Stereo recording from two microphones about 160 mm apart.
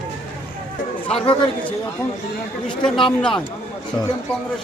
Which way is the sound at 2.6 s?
5° left (ahead or behind).